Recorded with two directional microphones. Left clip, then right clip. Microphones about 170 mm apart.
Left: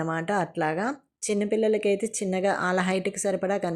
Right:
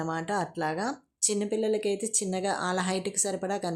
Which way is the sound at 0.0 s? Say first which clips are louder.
Left 3 dB; 15° left (ahead or behind).